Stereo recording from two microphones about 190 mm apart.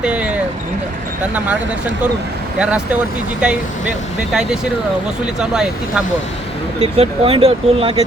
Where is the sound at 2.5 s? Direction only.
5° right (ahead or behind).